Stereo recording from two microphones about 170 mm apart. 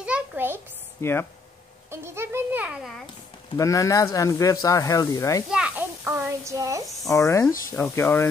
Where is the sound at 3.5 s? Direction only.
20° left (ahead or behind).